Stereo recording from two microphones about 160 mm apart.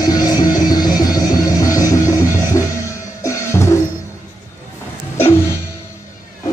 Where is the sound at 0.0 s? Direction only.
25° left (ahead or behind).